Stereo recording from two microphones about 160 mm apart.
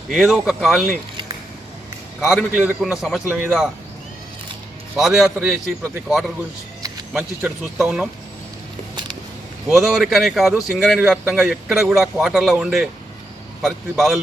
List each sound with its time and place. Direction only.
0.1 s a man's voice: centre (ahead or behind)
2.2 s a man's voice: 5° right (ahead or behind)
4.9 s a man's voice: centre (ahead or behind)
9.6 s a man's voice: centre (ahead or behind)